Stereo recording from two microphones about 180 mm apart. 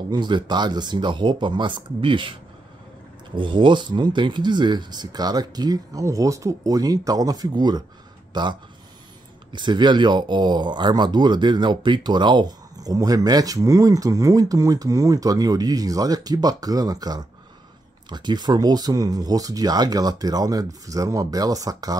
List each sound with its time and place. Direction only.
0.1 s speech: 25° right (ahead or behind)
3.3 s speech: 25° right (ahead or behind)